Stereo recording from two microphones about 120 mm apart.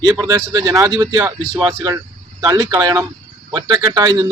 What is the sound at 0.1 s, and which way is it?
A man's voice, 30° right (ahead or behind).